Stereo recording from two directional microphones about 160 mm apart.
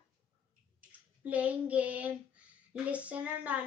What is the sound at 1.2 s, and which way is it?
A child's voice, 10° right (ahead or behind).